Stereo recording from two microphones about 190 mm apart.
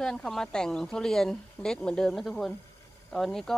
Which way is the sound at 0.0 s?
5° left (ahead or behind).